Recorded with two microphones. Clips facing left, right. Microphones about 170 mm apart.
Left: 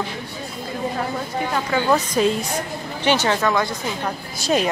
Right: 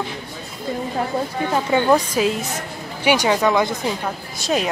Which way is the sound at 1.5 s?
20° right (ahead or behind).